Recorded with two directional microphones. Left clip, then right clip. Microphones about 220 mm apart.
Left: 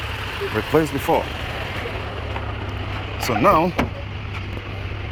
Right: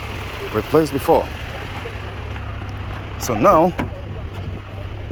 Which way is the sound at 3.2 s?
10° right (ahead or behind).